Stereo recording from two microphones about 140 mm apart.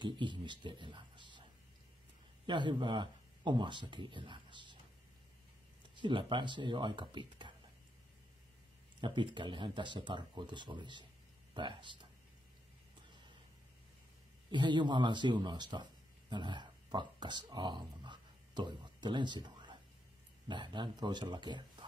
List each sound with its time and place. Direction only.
0.0 s speech: 35° right (ahead or behind)
2.4 s speech: 35° right (ahead or behind)
5.9 s speech: 35° right (ahead or behind)
9.0 s speech: 35° right (ahead or behind)
14.5 s speech: 35° right (ahead or behind)